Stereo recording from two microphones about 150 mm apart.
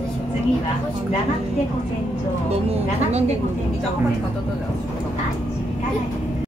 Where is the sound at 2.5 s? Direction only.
45° right (ahead or behind).